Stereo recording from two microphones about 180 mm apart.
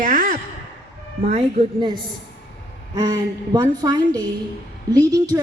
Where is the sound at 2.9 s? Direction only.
20° right (ahead or behind).